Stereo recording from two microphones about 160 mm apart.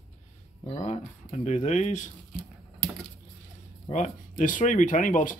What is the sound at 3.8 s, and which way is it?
Speech, 45° left (ahead or behind).